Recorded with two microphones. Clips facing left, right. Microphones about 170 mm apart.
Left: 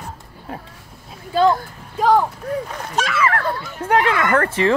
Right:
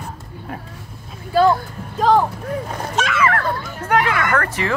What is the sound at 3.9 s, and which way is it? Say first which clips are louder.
Speech: left 1 dB; 25° left (ahead or behind).